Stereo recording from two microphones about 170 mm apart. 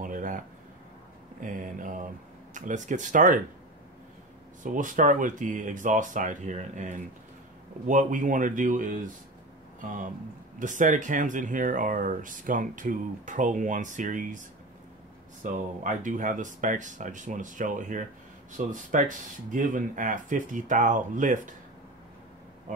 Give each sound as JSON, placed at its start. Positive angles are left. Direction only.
{"t": 0.0, "sound": "a sound", "side_deg": -50}
{"t": 1.4, "sound": "speech", "side_deg": -50}
{"t": 4.6, "sound": "speech", "side_deg": -50}
{"t": 15.4, "sound": "speech", "side_deg": -50}